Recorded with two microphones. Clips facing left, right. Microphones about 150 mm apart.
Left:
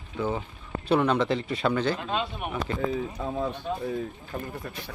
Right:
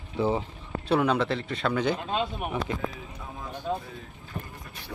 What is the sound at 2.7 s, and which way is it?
Speech, 10° right (ahead or behind).